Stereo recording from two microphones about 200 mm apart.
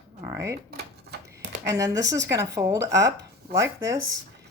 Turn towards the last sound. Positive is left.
turn(degrees=-15)  # may be behind; listen again after turning